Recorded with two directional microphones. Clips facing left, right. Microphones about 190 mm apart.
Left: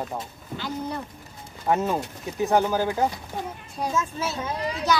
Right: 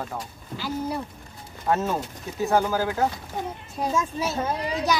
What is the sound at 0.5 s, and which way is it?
Speech, 5° right (ahead or behind).